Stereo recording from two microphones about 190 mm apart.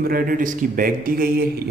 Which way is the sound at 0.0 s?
50° right (ahead or behind).